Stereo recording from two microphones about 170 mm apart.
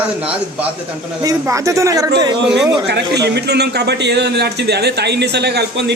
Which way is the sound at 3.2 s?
75° right (ahead or behind).